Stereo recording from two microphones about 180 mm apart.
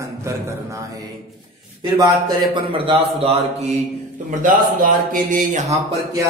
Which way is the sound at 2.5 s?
30° right (ahead or behind).